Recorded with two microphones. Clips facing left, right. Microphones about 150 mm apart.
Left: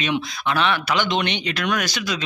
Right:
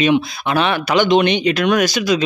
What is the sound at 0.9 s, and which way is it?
Speech, 15° right (ahead or behind).